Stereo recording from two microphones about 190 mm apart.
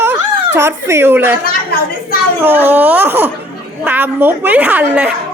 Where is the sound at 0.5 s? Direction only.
15° right (ahead or behind).